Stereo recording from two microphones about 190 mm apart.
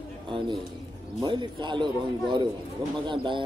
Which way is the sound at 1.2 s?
25° right (ahead or behind).